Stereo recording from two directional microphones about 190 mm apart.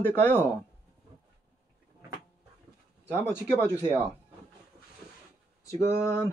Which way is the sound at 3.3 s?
15° left (ahead or behind).